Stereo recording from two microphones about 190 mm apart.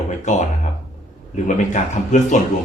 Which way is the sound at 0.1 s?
40° left (ahead or behind).